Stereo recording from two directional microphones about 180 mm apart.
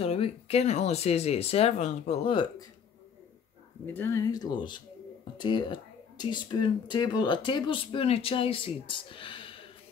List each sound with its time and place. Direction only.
0.0 s speech: 35° left (ahead or behind)
3.8 s speech: 10° left (ahead or behind); by 9.7 s 30° left (ahead or behind)